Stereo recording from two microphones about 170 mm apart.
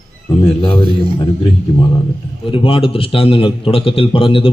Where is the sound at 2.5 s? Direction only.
30° left (ahead or behind).